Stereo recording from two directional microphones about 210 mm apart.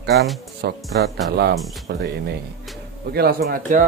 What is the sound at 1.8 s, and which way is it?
Speech, 55° right (ahead or behind).